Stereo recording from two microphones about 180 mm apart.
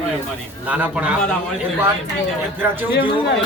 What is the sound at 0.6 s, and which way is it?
Speech, 10° right (ahead or behind).